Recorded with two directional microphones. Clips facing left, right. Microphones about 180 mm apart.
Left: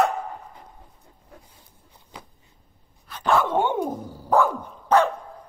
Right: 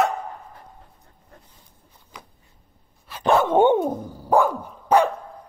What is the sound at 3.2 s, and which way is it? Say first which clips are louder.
Dog: right 5 dB; 20° right (ahead or behind).